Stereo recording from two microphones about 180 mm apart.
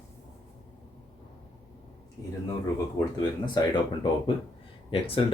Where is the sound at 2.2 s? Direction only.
15° left (ahead or behind).